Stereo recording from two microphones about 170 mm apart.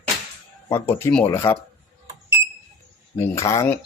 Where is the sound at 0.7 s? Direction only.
15° left (ahead or behind).